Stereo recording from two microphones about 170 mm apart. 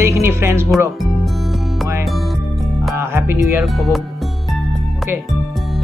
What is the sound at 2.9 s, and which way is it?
Music, 15° right (ahead or behind).